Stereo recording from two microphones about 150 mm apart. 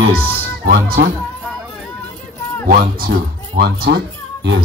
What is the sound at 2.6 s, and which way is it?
Speech, 80° right.